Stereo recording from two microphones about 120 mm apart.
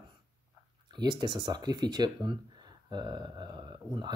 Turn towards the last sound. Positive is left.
turn(degrees=-35)  # may be behind; listen again after turning